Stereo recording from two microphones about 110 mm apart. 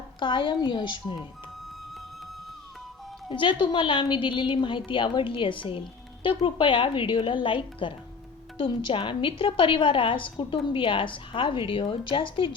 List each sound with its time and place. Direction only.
0.2 s speech: 45° left (ahead or behind)
3.2 s speech: 50° left (ahead or behind)